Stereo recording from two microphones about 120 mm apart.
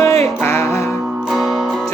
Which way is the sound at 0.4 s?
20° left (ahead or behind).